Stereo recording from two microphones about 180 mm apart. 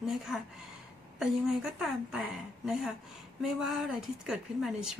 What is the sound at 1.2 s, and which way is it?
A woman's voice, 5° right (ahead or behind).